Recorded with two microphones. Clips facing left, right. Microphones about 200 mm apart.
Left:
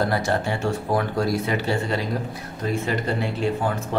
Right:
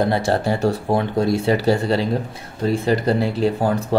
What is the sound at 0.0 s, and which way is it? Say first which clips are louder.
Speech: right 4 dB; 25° right (ahead or behind).